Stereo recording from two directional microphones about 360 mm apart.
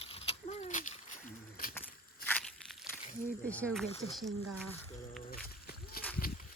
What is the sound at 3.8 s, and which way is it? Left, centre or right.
Speech, centre.